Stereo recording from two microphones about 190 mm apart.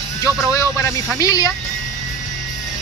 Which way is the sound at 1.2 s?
20° left (ahead or behind).